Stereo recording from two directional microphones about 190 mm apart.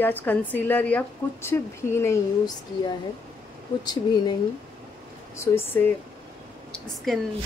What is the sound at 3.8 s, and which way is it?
Speech, 20° left (ahead or behind).